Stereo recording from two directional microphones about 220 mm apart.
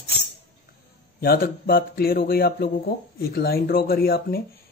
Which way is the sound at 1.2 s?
40° left (ahead or behind).